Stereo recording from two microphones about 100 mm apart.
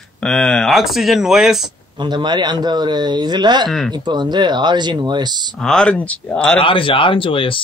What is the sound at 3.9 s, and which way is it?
Speech, 50° right (ahead or behind).